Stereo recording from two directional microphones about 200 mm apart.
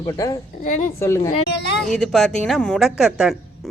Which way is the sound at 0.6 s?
40° left (ahead or behind).